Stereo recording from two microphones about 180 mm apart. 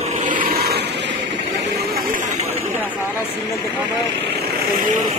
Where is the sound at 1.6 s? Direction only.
60° right (ahead or behind).